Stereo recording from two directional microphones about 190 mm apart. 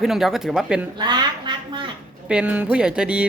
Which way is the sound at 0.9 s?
25° right (ahead or behind).